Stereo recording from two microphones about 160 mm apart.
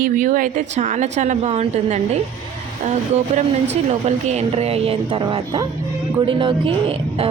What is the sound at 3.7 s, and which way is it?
Speech, 45° right (ahead or behind).